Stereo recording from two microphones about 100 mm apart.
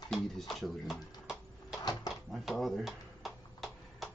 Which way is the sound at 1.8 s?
35° left (ahead or behind).